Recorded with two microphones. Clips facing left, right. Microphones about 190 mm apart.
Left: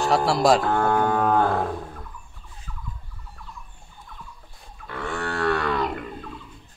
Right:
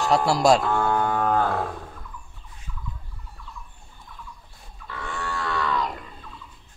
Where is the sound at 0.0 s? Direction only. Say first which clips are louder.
Even; centre (ahead or behind).